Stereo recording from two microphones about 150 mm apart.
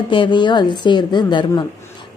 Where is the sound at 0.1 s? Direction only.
30° left (ahead or behind).